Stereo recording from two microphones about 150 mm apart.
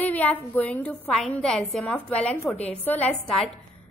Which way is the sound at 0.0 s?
10° left (ahead or behind).